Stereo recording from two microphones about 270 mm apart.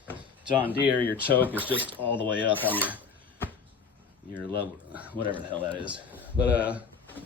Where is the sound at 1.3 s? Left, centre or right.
Centre.